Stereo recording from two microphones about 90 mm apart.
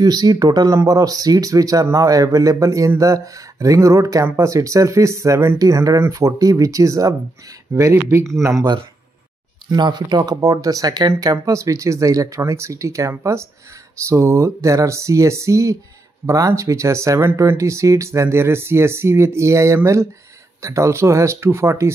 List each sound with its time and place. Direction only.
0.0 s speech: 50° right (ahead or behind); by 8.6 s 30° right (ahead or behind)
9.7 s speech: 55° right (ahead or behind); by 21.9 s 30° right (ahead or behind)